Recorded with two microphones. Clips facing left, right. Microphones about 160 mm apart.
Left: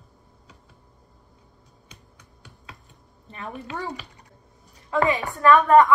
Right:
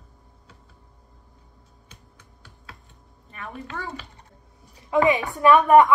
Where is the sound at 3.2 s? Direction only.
30° left (ahead or behind).